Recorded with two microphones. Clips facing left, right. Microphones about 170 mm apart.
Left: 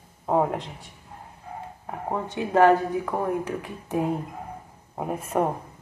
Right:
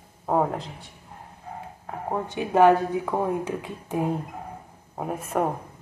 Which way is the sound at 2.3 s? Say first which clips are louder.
Even; 15° right (ahead or behind).